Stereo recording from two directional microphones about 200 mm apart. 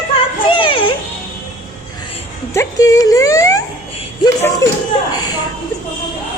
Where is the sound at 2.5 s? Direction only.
15° left (ahead or behind).